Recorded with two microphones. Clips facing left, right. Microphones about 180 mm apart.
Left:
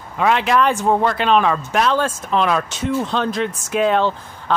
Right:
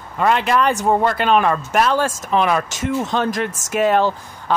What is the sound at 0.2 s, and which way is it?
Speech, centre (ahead or behind).